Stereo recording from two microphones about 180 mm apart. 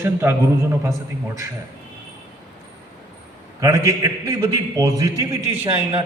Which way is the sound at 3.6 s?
15° right (ahead or behind).